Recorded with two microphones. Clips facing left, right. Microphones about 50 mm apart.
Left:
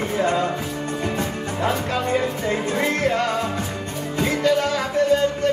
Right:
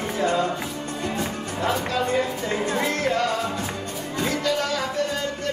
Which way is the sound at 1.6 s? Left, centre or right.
Centre.